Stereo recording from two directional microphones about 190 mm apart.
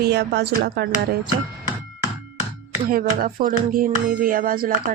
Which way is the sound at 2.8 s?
50° right (ahead or behind).